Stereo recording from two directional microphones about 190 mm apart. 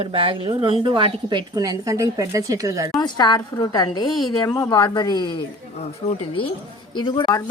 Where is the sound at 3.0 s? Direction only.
20° left (ahead or behind).